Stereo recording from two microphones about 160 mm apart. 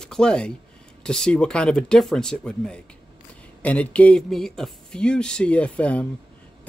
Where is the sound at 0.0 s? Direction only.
5° left (ahead or behind).